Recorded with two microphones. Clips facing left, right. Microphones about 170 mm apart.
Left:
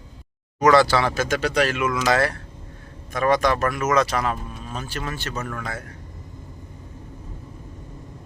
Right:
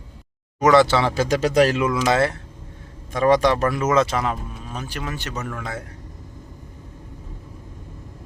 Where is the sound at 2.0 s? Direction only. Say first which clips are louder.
Right 1 dB; 25° right (ahead or behind).